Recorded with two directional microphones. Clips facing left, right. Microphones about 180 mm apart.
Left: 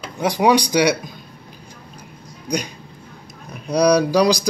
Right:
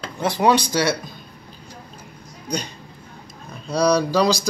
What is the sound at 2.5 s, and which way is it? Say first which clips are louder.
Speech: left 3 dB; 10° left (ahead or behind).